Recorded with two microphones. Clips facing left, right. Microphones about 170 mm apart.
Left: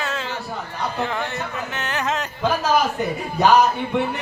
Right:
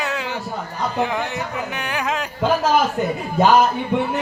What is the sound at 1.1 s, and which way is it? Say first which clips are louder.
Speech: right 2 dB; 15° right (ahead or behind).